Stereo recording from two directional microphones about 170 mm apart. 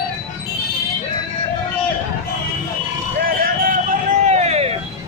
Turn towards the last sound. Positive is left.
turn(degrees=-40)  # may be behind; listen again after turning